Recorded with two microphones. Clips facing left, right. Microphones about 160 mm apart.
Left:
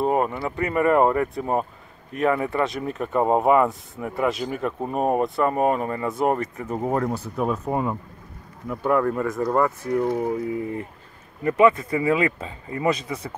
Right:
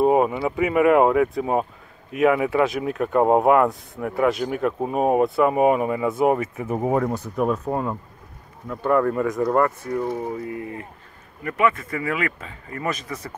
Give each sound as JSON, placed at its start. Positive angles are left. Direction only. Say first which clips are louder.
{"t": 0.0, "sound": "speech", "louder": "right 4 dB", "side_deg": -10}
{"t": 7.0, "sound": "speech", "louder": "right 2 dB", "side_deg": 0}
{"t": 9.9, "sound": "speech", "louder": "left 5 dB", "side_deg": 15}
{"t": 11.4, "sound": "speech", "louder": "left 5 dB", "side_deg": 25}